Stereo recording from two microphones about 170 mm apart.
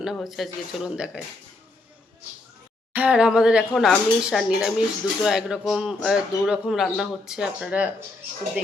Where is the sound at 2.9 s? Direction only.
5° right (ahead or behind).